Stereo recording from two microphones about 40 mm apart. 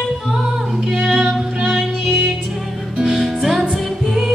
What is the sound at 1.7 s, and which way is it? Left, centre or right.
Music, centre.